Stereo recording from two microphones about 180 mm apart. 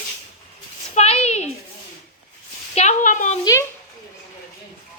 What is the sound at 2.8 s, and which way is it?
Speech, 40° left (ahead or behind).